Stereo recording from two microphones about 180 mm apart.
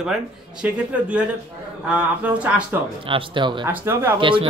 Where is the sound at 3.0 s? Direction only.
30° right (ahead or behind).